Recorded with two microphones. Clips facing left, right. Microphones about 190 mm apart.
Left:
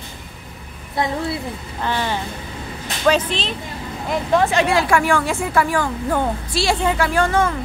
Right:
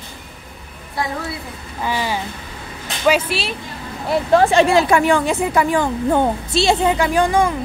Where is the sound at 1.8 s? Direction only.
10° right (ahead or behind).